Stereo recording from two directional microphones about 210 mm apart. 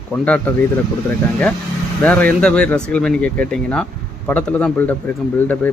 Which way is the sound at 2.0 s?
5° left (ahead or behind).